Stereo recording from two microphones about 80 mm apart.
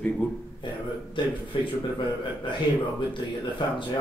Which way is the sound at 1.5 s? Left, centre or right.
Left.